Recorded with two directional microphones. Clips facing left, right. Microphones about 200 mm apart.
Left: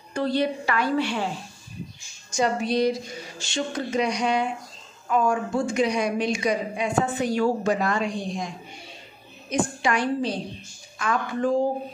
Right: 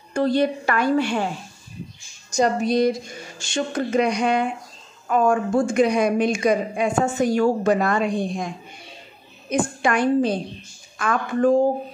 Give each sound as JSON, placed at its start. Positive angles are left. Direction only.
{"t": 0.1, "sound": "a woman's voice", "side_deg": -45}
{"t": 2.3, "sound": "a woman's voice", "side_deg": -45}
{"t": 9.5, "sound": "a woman's voice", "side_deg": -50}